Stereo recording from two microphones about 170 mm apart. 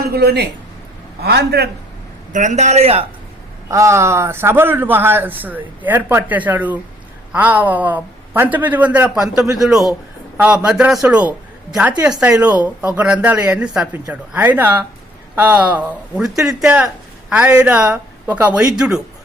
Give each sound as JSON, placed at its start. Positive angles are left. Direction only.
{"t": 0.0, "sound": "a man's voice", "side_deg": -70}
{"t": 2.3, "sound": "a man's voice", "side_deg": -45}
{"t": 3.7, "sound": "a man's voice", "side_deg": -15}